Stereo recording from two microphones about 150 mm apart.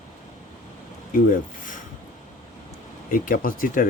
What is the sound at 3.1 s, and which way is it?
Speech, 70° left (ahead or behind).